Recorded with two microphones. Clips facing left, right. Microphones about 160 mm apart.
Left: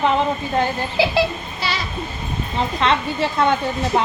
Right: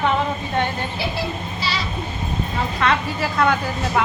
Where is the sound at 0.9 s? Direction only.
90° left.